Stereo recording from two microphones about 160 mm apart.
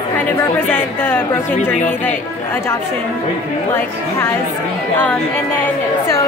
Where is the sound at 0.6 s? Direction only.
10° left (ahead or behind).